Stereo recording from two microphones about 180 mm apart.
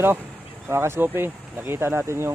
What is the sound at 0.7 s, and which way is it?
Speech, 15° right (ahead or behind).